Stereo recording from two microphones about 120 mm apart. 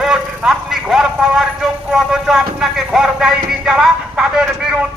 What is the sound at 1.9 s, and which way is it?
Speech, 5° right (ahead or behind).